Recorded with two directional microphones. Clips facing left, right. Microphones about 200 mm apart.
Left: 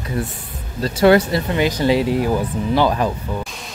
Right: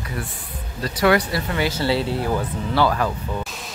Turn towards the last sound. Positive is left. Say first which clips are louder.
# left 3 dB
turn(degrees=20)  # may be behind; listen again after turning